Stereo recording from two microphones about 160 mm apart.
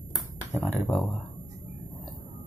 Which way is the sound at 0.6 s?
10° left (ahead or behind).